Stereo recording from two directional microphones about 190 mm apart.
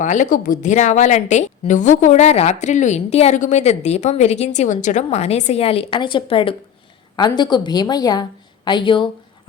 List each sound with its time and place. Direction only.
0.0 s a woman's voice: 40° left (ahead or behind); by 9.0 s 25° left (ahead or behind)